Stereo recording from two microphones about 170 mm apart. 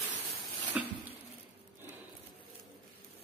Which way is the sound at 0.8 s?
5° right (ahead or behind).